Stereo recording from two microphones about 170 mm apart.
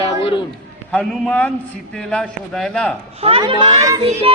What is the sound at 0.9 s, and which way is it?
A man's voice, 10° left (ahead or behind).